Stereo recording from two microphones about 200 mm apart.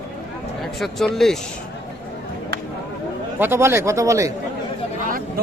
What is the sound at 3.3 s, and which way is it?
Speech, 10° right (ahead or behind).